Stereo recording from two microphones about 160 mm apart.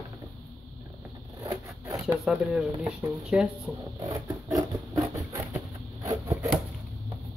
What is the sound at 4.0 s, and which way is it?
Zipper, 20° right (ahead or behind).